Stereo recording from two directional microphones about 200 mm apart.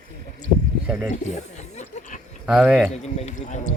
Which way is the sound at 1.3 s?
35° left (ahead or behind).